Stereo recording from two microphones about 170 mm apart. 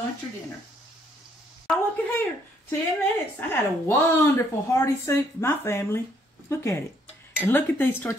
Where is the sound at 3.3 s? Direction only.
15° left (ahead or behind).